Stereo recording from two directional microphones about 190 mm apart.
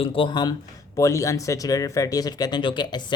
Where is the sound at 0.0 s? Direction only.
25° left (ahead or behind).